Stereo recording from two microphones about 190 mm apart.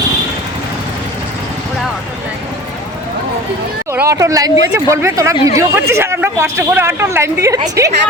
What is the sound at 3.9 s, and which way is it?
Speech, 15° right (ahead or behind).